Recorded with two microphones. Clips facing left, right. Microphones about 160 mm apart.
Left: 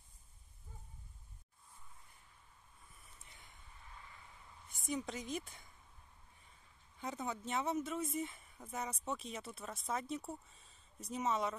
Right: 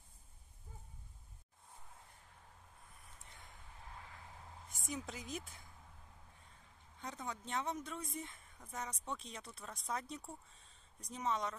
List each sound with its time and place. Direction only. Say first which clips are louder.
4.0 s vehicle: right 3 dB; 90° right
4.7 s a woman's voice: left 5 dB; centre (ahead or behind)
7.0 s speech: left 4 dB; 5° left (ahead or behind)